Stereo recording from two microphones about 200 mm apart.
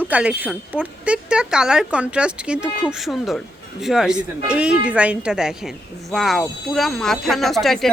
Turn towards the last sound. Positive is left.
turn(degrees=0)  # may be behind; listen again after turning